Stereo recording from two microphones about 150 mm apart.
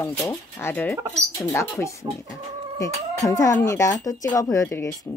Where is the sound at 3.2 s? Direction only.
20° left (ahead or behind).